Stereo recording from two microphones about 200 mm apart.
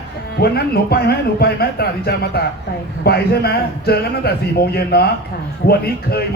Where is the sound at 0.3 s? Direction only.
55° left (ahead or behind).